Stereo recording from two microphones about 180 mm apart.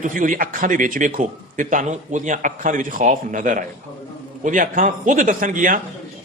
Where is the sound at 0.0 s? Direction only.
50° right (ahead or behind).